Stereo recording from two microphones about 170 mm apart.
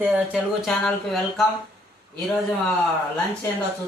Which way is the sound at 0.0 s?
5° right (ahead or behind).